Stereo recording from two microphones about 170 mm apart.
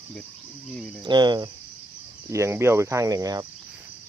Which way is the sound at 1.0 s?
25° right (ahead or behind).